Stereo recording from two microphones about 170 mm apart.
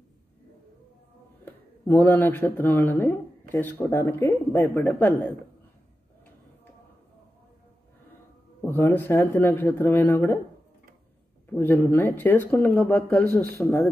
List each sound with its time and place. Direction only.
1.4 s speech: 15° left (ahead or behind)
8.5 s speech: 15° left (ahead or behind)
11.5 s speech: 10° left (ahead or behind)